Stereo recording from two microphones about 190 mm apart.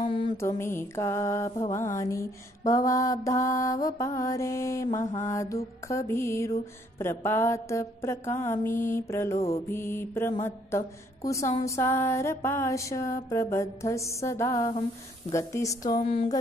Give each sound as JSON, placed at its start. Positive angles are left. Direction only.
{"t": 0.4, "sound": "mantra", "side_deg": 15}
{"t": 16.1, "sound": "speech", "side_deg": 30}